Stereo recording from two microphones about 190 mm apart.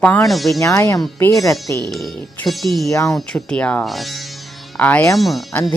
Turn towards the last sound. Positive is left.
turn(degrees=0)  # may be behind; listen again after turning